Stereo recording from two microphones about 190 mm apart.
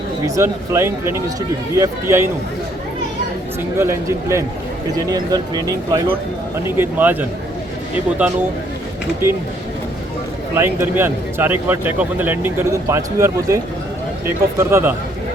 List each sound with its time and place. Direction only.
0.3 s speech: 15° right (ahead or behind)
3.8 s speech: 15° right (ahead or behind)
10.5 s speech: 10° right (ahead or behind)
14.6 s speech: 15° right (ahead or behind)